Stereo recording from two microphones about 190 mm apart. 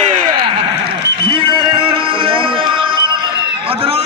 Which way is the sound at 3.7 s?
30° right (ahead or behind).